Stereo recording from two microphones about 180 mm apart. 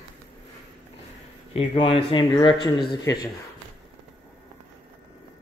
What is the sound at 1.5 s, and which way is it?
Speech, 30° left (ahead or behind).